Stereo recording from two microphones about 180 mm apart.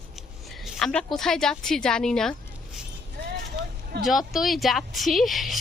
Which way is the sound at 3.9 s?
65° right (ahead or behind).